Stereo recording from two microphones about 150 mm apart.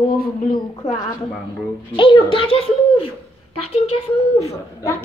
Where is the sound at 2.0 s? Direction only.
35° left (ahead or behind).